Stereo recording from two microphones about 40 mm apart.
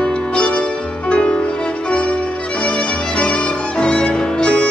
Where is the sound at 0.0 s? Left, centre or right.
Left.